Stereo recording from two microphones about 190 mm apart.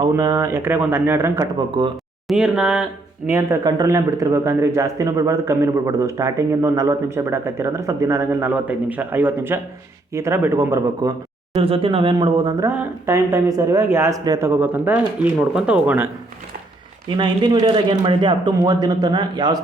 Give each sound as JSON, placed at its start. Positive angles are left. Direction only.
{"t": 0.0, "sound": "speech", "side_deg": -20}
{"t": 1.5, "sound": "speech", "side_deg": -25}
{"t": 2.2, "sound": "speech", "side_deg": -5}
{"t": 11.5, "sound": "speech", "side_deg": -30}
{"t": 17.1, "sound": "speech", "side_deg": -25}